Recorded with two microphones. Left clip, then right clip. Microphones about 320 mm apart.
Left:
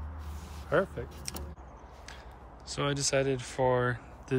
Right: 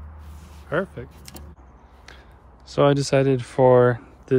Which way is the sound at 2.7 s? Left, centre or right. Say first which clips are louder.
Right 12 dB; centre.